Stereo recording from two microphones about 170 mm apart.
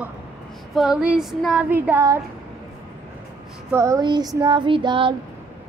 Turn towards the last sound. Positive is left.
turn(degrees=-30)  # may be behind; listen again after turning